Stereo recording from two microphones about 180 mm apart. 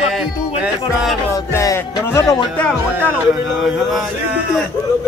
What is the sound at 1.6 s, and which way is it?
Music, 15° left (ahead or behind).